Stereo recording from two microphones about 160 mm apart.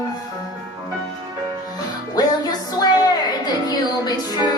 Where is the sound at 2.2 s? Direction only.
25° left (ahead or behind).